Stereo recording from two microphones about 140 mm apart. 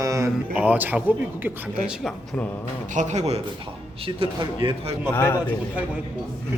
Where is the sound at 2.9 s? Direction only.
55° right (ahead or behind).